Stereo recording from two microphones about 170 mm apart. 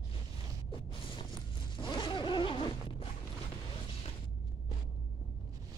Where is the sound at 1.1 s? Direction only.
30° left (ahead or behind).